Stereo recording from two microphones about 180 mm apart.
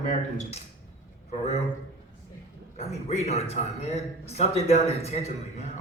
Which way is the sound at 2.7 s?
35° left (ahead or behind).